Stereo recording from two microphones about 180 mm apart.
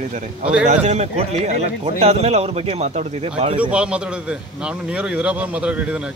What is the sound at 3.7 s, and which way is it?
A man's voice, 5° right (ahead or behind).